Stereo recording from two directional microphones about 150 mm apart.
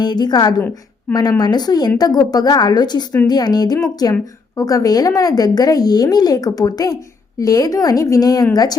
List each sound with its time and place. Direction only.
0.0 s a woman's voice: 30° left (ahead or behind)